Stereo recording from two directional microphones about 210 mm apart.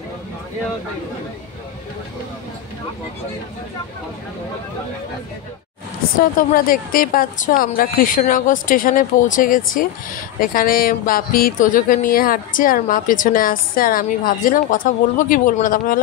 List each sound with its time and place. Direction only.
6.5 s speech: 45° left (ahead or behind)